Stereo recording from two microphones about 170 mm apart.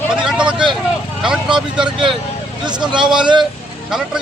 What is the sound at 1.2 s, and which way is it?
Speech, 5° right (ahead or behind).